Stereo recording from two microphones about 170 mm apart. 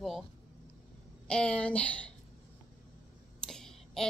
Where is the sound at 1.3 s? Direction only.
5° left (ahead or behind).